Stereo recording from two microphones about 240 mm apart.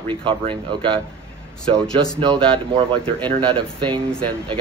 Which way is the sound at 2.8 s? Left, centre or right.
Right.